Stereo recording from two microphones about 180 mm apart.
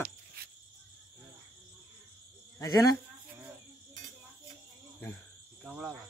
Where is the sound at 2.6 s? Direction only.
20° left (ahead or behind).